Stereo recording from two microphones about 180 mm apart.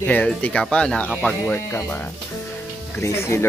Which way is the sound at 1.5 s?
15° left (ahead or behind).